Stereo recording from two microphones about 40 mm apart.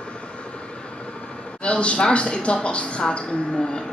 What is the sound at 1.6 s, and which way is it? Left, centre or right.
Speech, left.